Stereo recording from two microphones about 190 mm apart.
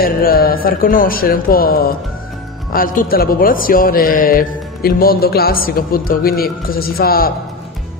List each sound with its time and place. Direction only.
0.0 s a man's voice: 50° left (ahead or behind)